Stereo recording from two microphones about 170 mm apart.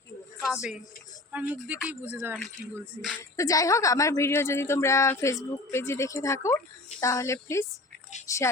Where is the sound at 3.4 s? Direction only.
20° left (ahead or behind).